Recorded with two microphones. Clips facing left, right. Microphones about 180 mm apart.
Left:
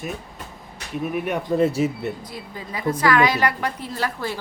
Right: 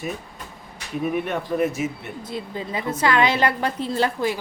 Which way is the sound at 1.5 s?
30° left (ahead or behind).